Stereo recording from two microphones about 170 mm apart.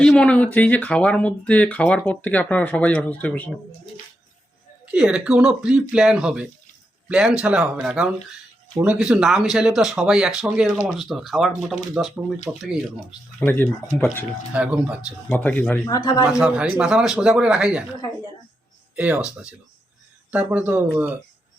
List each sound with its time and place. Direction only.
0.0 s speech: 5° left (ahead or behind)
4.9 s speech: 5° right (ahead or behind)
13.4 s speech: 10° left (ahead or behind)
14.5 s speech: 10° right (ahead or behind)
15.3 s speech: 10° left (ahead or behind)
15.9 s a man's voice: 20° left (ahead or behind)
16.4 s speech: 5° right (ahead or behind)
18.9 s speech: 10° right (ahead or behind)